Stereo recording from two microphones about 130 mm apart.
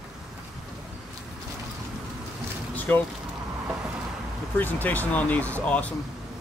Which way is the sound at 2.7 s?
15° left (ahead or behind).